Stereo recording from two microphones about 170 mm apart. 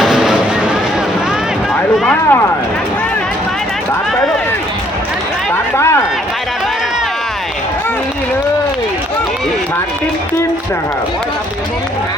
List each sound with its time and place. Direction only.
0.0 s vehicle: 5° right (ahead or behind)
1.7 s a sound: 10° left (ahead or behind)
5.7 s run: 15° left (ahead or behind)